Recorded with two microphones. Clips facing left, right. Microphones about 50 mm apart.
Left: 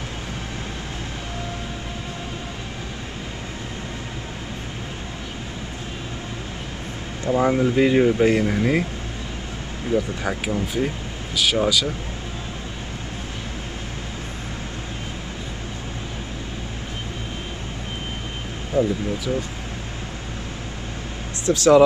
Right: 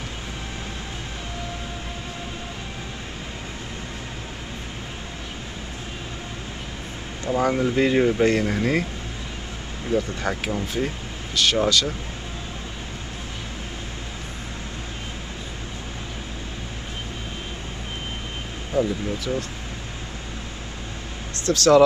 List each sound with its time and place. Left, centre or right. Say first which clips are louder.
7.2 s speech: left 2 dB; centre
9.8 s speech: left 1 dB; centre
18.7 s speech: left 2 dB; centre
21.5 s speech: left 1 dB; centre